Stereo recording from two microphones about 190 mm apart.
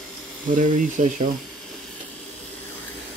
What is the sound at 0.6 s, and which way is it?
Speech, 40° right (ahead or behind).